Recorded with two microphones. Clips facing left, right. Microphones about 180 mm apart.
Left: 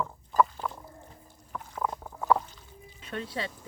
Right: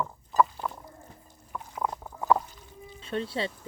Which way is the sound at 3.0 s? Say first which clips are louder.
Right 4 dB; 30° right (ahead or behind).